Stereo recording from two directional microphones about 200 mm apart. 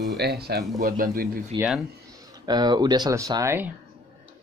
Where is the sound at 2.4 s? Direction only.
20° right (ahead or behind).